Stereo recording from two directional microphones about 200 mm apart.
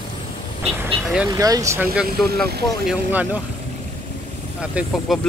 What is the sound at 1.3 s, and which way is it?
Speech, 15° right (ahead or behind).